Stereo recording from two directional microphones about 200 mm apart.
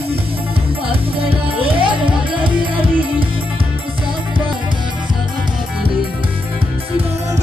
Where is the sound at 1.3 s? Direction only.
25° right (ahead or behind).